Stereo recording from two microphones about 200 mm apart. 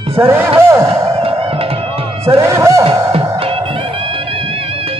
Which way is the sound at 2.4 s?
15° right (ahead or behind).